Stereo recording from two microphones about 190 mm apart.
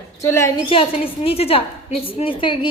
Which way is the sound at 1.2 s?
30° left (ahead or behind).